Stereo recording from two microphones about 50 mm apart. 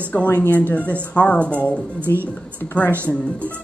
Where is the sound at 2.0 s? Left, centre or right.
Right.